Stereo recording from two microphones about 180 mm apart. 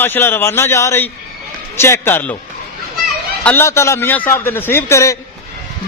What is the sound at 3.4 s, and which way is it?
A man's voice, 10° left (ahead or behind).